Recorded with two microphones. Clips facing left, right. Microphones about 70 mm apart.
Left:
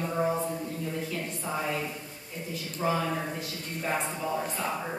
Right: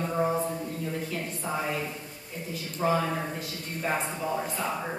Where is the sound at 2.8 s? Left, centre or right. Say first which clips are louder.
Right 2 dB; centre.